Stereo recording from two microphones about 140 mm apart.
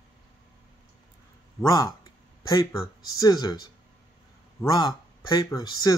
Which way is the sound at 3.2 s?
25° left (ahead or behind).